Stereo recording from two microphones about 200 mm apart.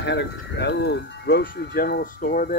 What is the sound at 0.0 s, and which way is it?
Speech, 60° left (ahead or behind).